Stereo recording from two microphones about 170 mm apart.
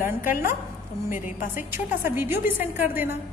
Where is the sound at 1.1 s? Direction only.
50° left (ahead or behind).